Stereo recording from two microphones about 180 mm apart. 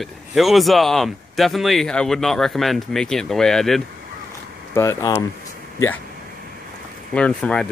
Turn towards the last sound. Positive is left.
turn(degrees=5)  # may be behind; listen again after turning